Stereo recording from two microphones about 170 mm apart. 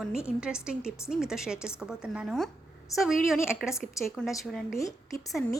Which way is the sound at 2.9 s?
20° left (ahead or behind).